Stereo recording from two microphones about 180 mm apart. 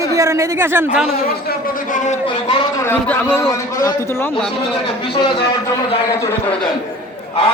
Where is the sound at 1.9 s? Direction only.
45° left (ahead or behind).